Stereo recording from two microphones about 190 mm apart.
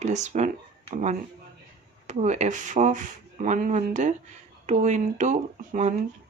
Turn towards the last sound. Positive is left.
turn(degrees=-40)  # may be behind; listen again after turning